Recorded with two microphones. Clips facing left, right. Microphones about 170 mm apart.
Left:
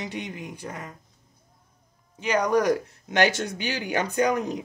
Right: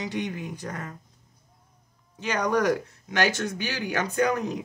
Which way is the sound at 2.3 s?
10° left (ahead or behind).